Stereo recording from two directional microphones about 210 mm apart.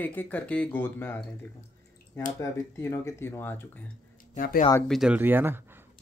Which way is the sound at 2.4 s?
15° left (ahead or behind).